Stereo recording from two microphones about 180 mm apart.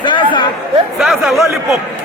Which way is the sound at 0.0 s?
25° left (ahead or behind).